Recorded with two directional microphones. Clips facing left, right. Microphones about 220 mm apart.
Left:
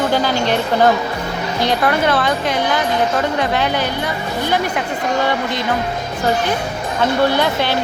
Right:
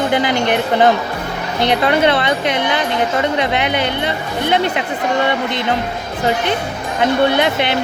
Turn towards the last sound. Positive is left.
turn(degrees=-20)  # may be behind; listen again after turning